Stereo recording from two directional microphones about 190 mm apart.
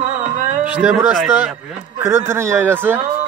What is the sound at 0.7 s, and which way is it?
Speech, 10° right (ahead or behind).